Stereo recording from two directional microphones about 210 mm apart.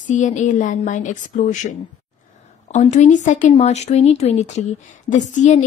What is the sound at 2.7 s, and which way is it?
Speech, 35° left (ahead or behind).